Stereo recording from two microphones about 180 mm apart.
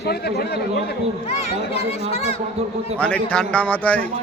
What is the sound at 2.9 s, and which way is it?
A man's voice, 5° left (ahead or behind).